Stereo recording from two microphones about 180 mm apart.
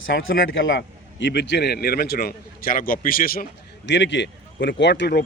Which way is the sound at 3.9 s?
80° left.